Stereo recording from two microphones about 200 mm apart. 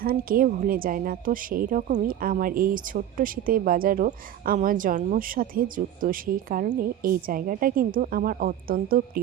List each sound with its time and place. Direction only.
0.0 s speech: 45° right (ahead or behind)